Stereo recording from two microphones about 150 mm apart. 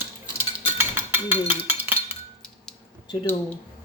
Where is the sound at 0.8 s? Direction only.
15° right (ahead or behind).